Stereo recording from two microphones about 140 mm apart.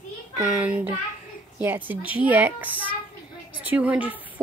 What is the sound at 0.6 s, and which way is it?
Speech, 10° right (ahead or behind).